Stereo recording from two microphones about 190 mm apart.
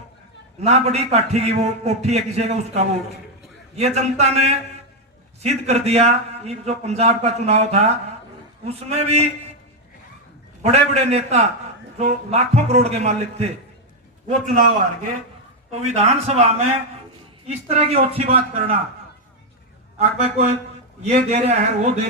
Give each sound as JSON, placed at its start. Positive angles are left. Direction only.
{"t": 0.6, "sound": "a man's voice", "side_deg": -35}
{"t": 10.6, "sound": "a man's voice", "side_deg": -35}
{"t": 15.8, "sound": "a man's voice", "side_deg": -35}
{"t": 20.0, "sound": "a man's voice", "side_deg": -35}